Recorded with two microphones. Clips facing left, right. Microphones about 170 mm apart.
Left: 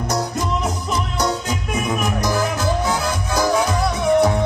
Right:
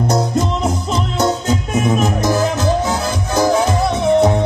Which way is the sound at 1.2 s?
25° right (ahead or behind).